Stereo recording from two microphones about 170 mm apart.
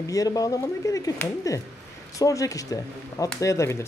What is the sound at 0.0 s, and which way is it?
Speech, 20° left (ahead or behind).